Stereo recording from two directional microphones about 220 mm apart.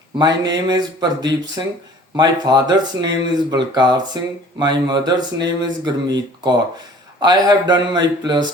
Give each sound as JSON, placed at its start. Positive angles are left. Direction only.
{"t": 0.2, "sound": "speech", "side_deg": -20}